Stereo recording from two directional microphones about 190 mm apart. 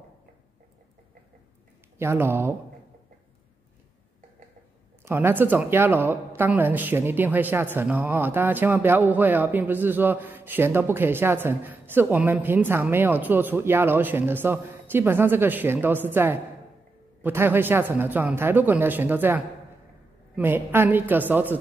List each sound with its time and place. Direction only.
2.0 s speech: 10° right (ahead or behind)
5.0 s speech: 10° right (ahead or behind)